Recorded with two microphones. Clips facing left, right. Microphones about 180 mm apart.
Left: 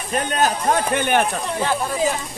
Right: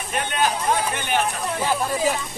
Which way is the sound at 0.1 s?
40° left (ahead or behind).